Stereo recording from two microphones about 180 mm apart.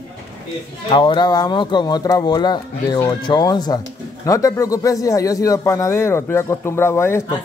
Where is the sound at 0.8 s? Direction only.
25° left (ahead or behind).